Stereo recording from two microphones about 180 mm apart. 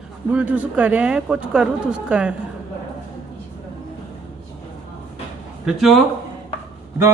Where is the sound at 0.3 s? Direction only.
10° right (ahead or behind).